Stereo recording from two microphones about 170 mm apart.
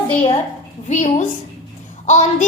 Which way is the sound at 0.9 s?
45° left (ahead or behind).